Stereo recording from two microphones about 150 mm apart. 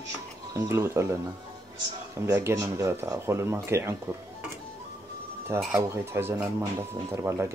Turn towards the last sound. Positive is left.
turn(degrees=-15)  # may be behind; listen again after turning